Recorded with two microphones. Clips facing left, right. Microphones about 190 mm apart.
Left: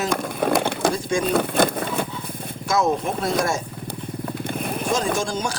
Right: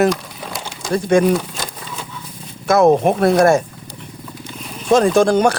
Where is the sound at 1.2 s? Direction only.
60° left (ahead or behind).